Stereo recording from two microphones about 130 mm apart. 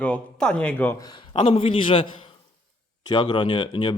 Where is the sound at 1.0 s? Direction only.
35° left (ahead or behind).